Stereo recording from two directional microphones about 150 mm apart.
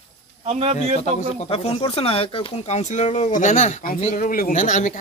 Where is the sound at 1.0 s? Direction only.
45° left (ahead or behind).